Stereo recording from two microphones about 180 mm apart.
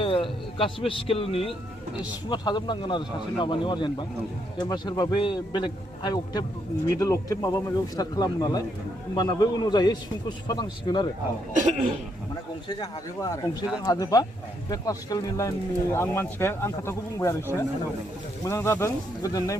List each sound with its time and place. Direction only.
0.0 s a man's voice: 30° left (ahead or behind)
11.5 s speech: 45° right (ahead or behind)
12.6 s a man's voice: 20° left (ahead or behind)
18.4 s speech: 15° left (ahead or behind)